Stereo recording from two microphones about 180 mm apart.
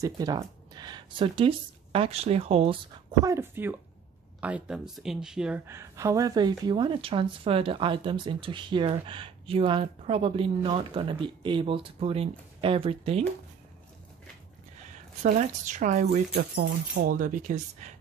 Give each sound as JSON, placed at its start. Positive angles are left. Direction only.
{"t": 0.0, "sound": "speech", "side_deg": -20}
{"t": 3.3, "sound": "speech", "side_deg": -15}
{"t": 15.2, "sound": "speech", "side_deg": -45}
{"t": 16.3, "sound": "speech", "side_deg": -60}